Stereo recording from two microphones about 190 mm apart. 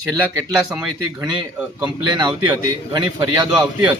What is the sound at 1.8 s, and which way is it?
Speech, 20° right (ahead or behind).